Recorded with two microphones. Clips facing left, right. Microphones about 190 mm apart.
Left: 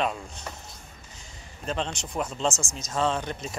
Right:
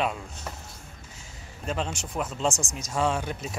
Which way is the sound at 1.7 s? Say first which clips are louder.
Even; 5° right (ahead or behind).